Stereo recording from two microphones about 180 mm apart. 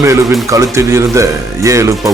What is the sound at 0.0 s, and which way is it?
Speech, 15° right (ahead or behind).